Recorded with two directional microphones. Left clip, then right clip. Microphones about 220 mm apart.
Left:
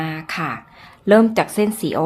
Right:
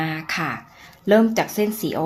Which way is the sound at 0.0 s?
5° left (ahead or behind).